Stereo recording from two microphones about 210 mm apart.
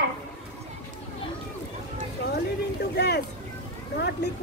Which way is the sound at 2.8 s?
50° left (ahead or behind).